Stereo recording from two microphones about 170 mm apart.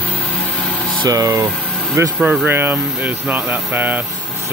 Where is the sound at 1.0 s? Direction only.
25° right (ahead or behind).